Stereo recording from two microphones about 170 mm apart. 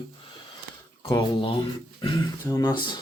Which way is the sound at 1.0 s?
30° left (ahead or behind).